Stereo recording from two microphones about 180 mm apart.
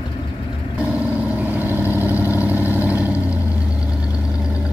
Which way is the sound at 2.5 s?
10° right (ahead or behind).